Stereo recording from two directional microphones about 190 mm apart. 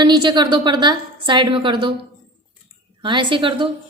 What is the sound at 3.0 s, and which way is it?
Speech, 25° right (ahead or behind).